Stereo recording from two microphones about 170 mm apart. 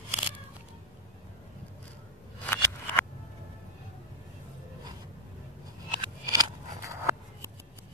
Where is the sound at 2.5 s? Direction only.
15° left (ahead or behind).